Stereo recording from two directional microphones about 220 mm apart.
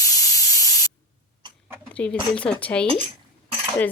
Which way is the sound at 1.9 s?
5° left (ahead or behind).